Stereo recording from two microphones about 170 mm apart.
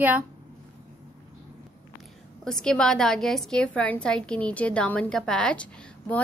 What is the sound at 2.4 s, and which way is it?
A woman's voice, 5° left (ahead or behind).